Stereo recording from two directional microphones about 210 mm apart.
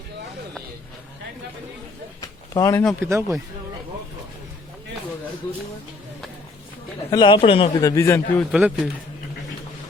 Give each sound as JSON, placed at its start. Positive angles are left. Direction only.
{"t": 2.5, "sound": "speech", "side_deg": 15}
{"t": 3.0, "sound": "speech", "side_deg": -15}
{"t": 7.1, "sound": "a man's voice", "side_deg": 20}
{"t": 8.5, "sound": "speech", "side_deg": 0}